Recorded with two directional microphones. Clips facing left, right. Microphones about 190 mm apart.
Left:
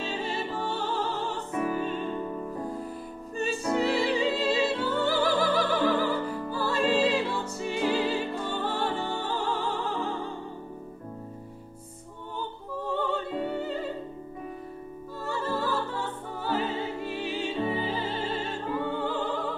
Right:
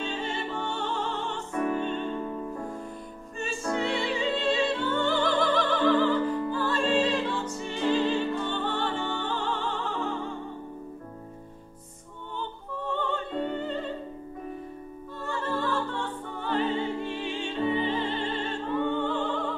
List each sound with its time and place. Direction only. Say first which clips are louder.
0.4 s music: left 1 dB; 5° left (ahead or behind)
3.6 s music: left 2 dB; 5° left (ahead or behind)
8.8 s music: even; 35° left (ahead or behind)
9.2 s music: left 1 dB; 10° left (ahead or behind)
12.4 s music: left 1 dB; 10° left (ahead or behind)
15.4 s music: right 1 dB; 5° left (ahead or behind)